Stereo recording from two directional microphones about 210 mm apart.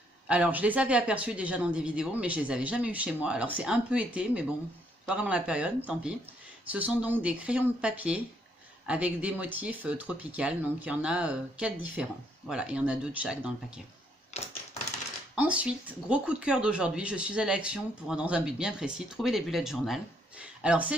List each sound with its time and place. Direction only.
0.3 s speech: 5° right (ahead or behind)
14.3 s typewriter: 30° left (ahead or behind)
15.3 s speech: 5° right (ahead or behind)